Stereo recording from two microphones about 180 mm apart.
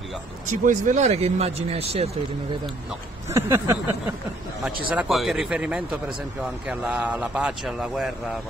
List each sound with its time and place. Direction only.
0.5 s speech: 45° right (ahead or behind)
3.3 s speech: 15° right (ahead or behind)
4.9 s speech: centre (ahead or behind)